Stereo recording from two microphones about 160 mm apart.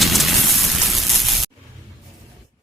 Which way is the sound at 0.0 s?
Centre (ahead or behind).